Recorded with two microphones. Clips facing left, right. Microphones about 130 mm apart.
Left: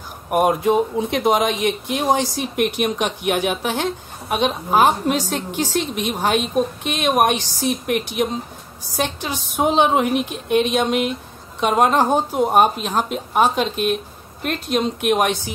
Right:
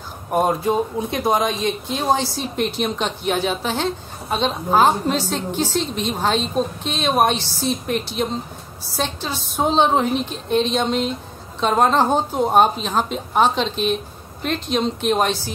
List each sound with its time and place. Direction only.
0.3 s a woman's voice: 15° left (ahead or behind)